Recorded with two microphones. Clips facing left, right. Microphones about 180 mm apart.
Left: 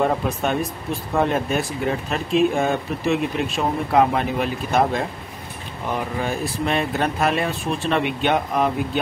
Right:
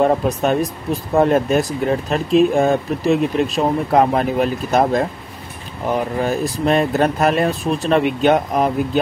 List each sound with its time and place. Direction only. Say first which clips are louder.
0.0 s speech: right 5 dB; 40° right (ahead or behind)
6.2 s speech: right 6 dB; 40° right (ahead or behind)